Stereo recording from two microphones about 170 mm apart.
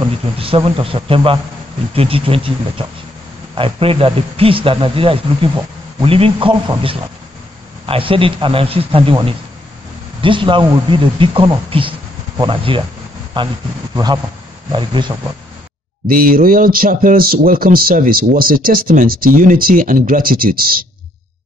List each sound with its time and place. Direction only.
0.4 s speech: 35° right (ahead or behind)
13.9 s speech: 25° right (ahead or behind)
16.1 s speech: 55° right (ahead or behind)